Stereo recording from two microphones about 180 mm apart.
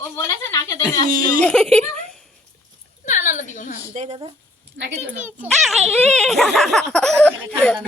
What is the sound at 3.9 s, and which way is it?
Speech, 35° right (ahead or behind).